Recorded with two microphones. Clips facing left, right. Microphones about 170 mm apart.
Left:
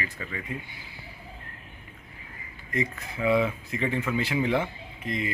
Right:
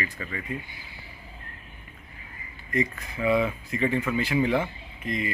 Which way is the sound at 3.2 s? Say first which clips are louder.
Even; 15° left (ahead or behind).